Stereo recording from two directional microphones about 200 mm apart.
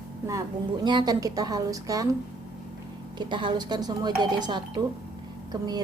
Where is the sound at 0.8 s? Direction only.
20° right (ahead or behind).